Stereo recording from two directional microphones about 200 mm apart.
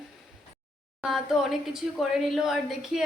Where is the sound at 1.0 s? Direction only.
Centre (ahead or behind).